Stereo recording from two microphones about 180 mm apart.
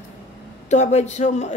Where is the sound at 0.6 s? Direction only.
40° left (ahead or behind).